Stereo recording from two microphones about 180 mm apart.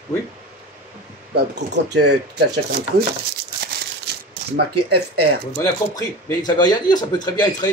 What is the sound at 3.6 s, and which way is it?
Crumpling, 65° right (ahead or behind).